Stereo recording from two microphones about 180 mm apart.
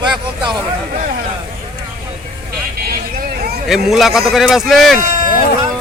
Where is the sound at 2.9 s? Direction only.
55° right (ahead or behind).